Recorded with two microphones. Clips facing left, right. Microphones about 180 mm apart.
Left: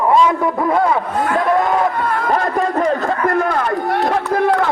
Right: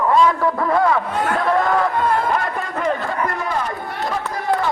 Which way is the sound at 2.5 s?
40° left (ahead or behind).